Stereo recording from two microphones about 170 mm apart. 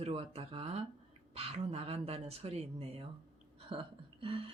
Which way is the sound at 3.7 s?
30° right (ahead or behind).